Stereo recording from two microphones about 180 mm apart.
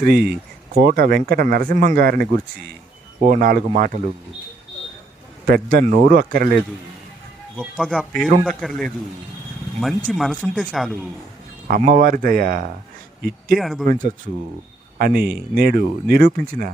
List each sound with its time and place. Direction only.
0.0 s speech: 60° right (ahead or behind)
3.2 s speech: 50° right (ahead or behind)
5.5 s speech: 55° right (ahead or behind)
7.6 s speech: centre (ahead or behind)
10.1 s speech: centre (ahead or behind)
11.7 s speech: 50° right (ahead or behind)
13.6 s speech: centre (ahead or behind)
13.8 s speech: 45° right (ahead or behind)
14.9 s speech: 55° right (ahead or behind)